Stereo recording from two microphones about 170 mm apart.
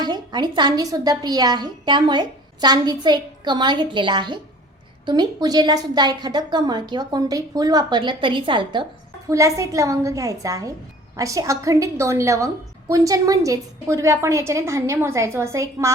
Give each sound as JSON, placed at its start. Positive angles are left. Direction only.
{"t": 0.0, "sound": "a woman's voice", "side_deg": -25}
{"t": 9.3, "sound": "a woman's voice", "side_deg": -20}